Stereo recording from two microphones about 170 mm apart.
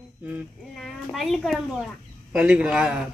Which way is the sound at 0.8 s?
Centre (ahead or behind).